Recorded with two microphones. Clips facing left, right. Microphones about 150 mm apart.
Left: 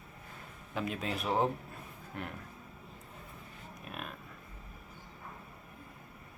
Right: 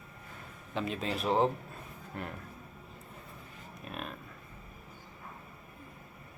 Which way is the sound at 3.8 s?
5° left (ahead or behind).